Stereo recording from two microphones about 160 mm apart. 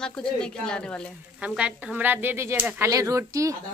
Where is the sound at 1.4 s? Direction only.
5° right (ahead or behind).